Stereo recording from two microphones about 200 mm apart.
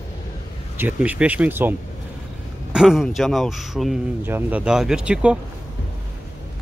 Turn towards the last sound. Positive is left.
turn(degrees=-5)  # may be behind; listen again after turning